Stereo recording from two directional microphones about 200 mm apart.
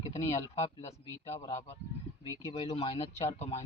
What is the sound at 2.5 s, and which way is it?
Speech, 25° left (ahead or behind).